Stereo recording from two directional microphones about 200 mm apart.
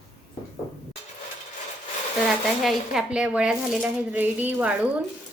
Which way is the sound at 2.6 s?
Centre (ahead or behind).